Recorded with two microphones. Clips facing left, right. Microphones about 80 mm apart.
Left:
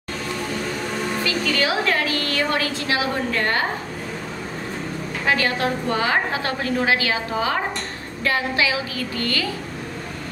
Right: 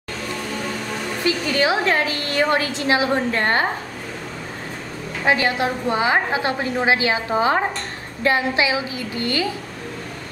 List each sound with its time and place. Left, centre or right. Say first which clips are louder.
1.2 s a woman's voice: right 5 dB; right
5.2 s a woman's voice: right 2 dB; right